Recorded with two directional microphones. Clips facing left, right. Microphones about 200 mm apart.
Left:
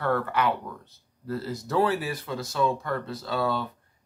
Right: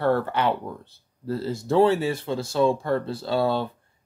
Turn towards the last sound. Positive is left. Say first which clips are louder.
# right 4 dB
turn(degrees=-30)  # may be behind; listen again after turning